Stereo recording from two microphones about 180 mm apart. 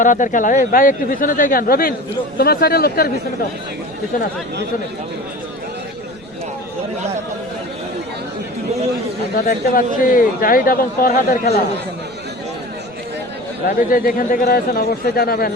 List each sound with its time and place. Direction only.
0.0 s speech: 45° left (ahead or behind)
9.3 s speech: 50° left (ahead or behind)
13.7 s speech: 55° left (ahead or behind)